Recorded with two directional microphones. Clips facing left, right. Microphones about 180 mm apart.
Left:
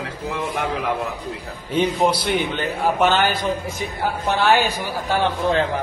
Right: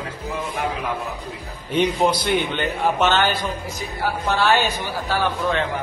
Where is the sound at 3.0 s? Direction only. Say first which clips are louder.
Left 2 dB; 15° left (ahead or behind).